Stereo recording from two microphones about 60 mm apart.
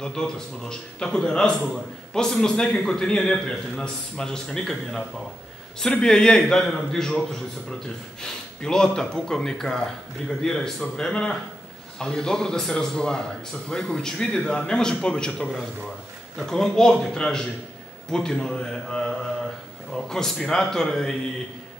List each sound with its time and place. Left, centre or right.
0.0 s speech: centre